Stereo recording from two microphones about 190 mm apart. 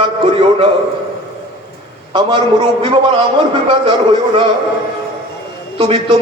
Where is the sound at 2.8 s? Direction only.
30° right (ahead or behind).